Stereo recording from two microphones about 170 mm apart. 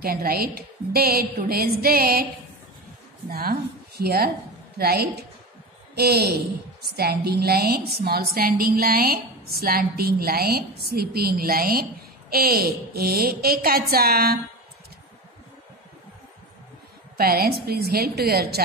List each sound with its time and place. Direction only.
0.0 s a woman's voice: 60° right (ahead or behind)
3.3 s a woman's voice: 60° right (ahead or behind)
17.2 s a woman's voice: 65° right (ahead or behind)